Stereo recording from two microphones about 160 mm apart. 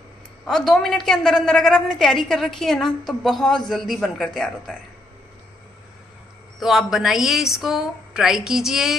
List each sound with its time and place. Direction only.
0.5 s a woman's voice: 5° left (ahead or behind)
6.6 s a woman's voice: centre (ahead or behind)